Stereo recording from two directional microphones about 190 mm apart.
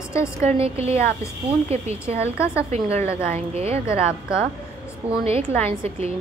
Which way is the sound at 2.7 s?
35° right (ahead or behind).